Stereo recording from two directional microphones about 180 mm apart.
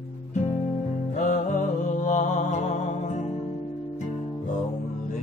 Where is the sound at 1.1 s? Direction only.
45° left (ahead or behind).